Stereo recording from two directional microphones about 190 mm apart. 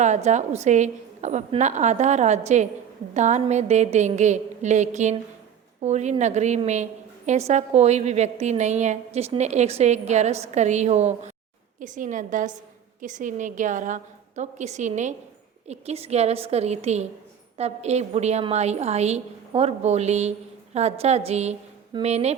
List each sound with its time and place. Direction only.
0.0 s a woman's voice: 40° right (ahead or behind)